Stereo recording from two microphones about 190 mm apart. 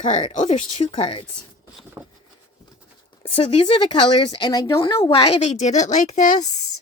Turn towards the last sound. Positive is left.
turn(degrees=40)  # may be behind; listen again after turning